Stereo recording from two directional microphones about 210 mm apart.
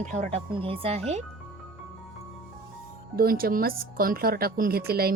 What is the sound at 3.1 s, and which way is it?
Speech, 45° right (ahead or behind).